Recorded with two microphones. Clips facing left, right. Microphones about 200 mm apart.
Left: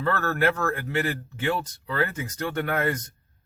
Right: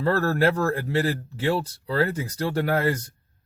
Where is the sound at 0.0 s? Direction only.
35° right (ahead or behind).